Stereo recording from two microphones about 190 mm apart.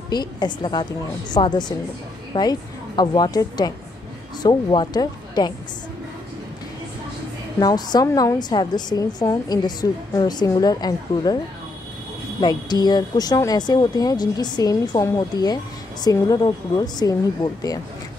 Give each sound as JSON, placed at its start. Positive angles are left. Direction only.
{"t": 0.1, "sound": "speech", "side_deg": 20}
{"t": 7.6, "sound": "speech", "side_deg": 20}
{"t": 12.4, "sound": "speech", "side_deg": 20}